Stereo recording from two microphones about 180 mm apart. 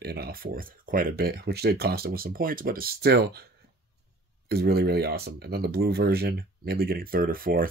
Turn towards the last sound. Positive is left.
turn(degrees=-55)  # may be behind; listen again after turning